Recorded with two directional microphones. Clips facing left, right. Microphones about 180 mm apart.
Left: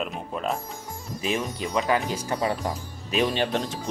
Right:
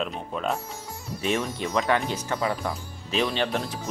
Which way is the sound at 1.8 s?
10° left (ahead or behind).